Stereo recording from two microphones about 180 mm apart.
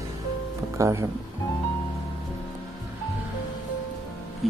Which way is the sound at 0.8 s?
15° right (ahead or behind).